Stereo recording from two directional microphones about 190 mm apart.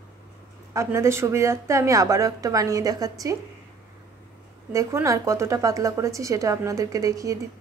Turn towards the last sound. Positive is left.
turn(degrees=-15)  # may be behind; listen again after turning